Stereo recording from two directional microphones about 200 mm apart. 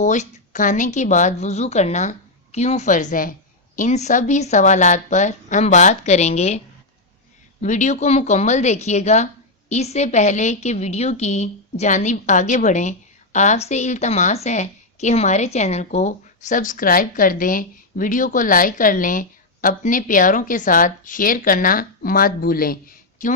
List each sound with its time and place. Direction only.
0.0 s a woman's voice: 40° left (ahead or behind)
7.6 s a woman's voice: 35° left (ahead or behind)